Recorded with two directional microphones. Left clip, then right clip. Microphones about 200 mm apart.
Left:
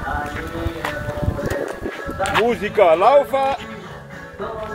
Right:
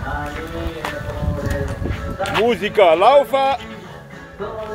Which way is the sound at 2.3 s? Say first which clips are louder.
Right 1 dB; 15° right (ahead or behind).